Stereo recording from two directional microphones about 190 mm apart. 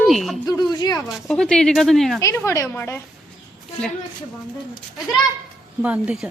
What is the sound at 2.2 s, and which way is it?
Speech, 15° left (ahead or behind).